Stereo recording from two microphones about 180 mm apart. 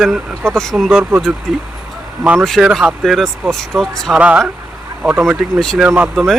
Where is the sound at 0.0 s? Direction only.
Centre (ahead or behind).